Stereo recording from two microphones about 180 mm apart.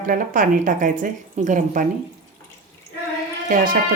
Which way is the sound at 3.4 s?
50° right (ahead or behind).